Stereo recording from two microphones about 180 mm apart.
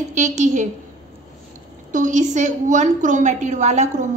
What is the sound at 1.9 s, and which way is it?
A woman's voice, 40° right (ahead or behind).